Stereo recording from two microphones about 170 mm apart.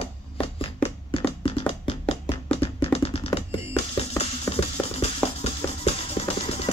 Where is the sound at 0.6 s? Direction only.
30° left (ahead or behind).